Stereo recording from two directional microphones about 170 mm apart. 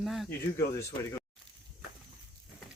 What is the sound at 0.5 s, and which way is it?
Speech, 15° left (ahead or behind).